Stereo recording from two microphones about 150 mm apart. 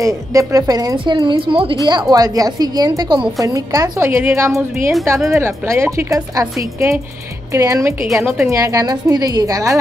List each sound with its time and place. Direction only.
0.0 s a woman's voice: 20° right (ahead or behind)